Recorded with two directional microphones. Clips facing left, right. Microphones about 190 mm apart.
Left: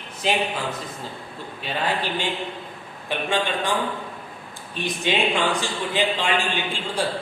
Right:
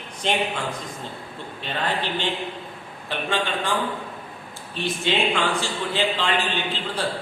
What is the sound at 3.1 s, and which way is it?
A man's voice, 15° left (ahead or behind).